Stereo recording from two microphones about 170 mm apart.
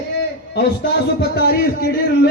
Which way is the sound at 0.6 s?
70° left (ahead or behind).